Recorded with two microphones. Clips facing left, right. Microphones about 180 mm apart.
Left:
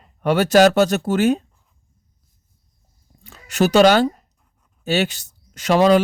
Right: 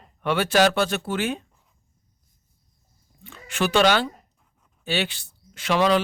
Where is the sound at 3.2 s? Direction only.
40° left (ahead or behind).